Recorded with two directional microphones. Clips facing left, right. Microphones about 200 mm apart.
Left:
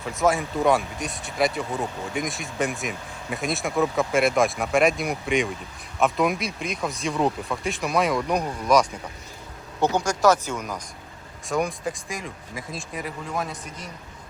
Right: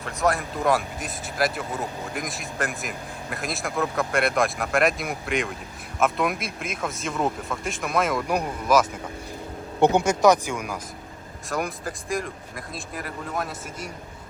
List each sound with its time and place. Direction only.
0.0 s speech: centre (ahead or behind)
9.8 s speech: 25° right (ahead or behind)
11.4 s speech: centre (ahead or behind)